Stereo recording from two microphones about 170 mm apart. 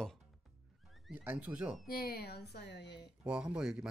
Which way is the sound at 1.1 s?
10° right (ahead or behind).